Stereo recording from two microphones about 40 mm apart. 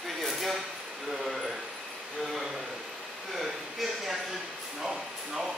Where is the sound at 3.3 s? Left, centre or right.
Centre.